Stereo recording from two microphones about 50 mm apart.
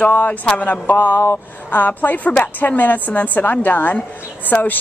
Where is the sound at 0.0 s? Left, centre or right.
Left.